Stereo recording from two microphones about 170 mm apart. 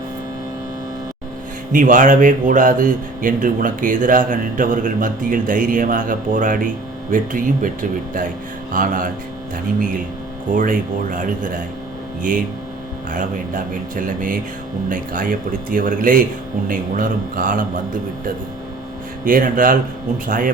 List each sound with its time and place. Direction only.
1.7 s speech: 50° right (ahead or behind)
10.5 s speech: 50° right (ahead or behind)
13.1 s speech: 55° right (ahead or behind)
19.2 s speech: 55° right (ahead or behind)